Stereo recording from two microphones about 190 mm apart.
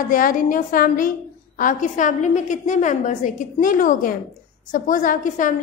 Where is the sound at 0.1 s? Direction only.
45° left (ahead or behind).